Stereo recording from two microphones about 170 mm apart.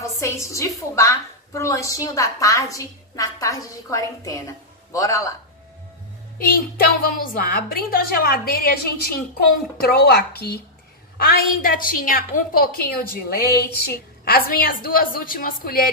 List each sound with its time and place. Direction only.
0.2 s a woman's voice: 15° left (ahead or behind)
6.3 s a woman's voice: 60° left (ahead or behind)
11.1 s a woman's voice: 60° left (ahead or behind)